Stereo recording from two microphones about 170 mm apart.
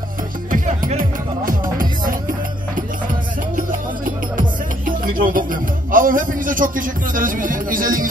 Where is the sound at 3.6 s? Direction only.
50° right (ahead or behind).